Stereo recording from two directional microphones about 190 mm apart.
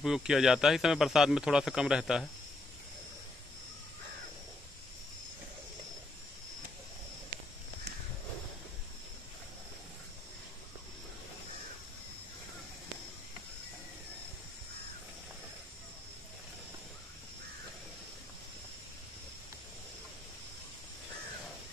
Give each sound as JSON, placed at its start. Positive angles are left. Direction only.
{"t": 0.0, "sound": "speech", "side_deg": 0}